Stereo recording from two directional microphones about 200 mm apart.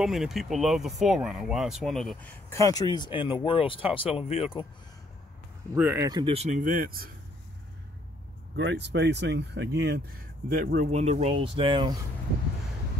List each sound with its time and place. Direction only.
0.0 s speech: centre (ahead or behind)
2.5 s speech: 15° left (ahead or behind)
5.8 s speech: 10° right (ahead or behind); by 7.1 s 45° right (ahead or behind)
8.5 s speech: 60° right (ahead or behind); by 11.9 s 25° right (ahead or behind)